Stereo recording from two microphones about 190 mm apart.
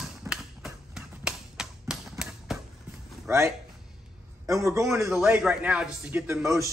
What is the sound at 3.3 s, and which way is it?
A man's voice, 15° right (ahead or behind).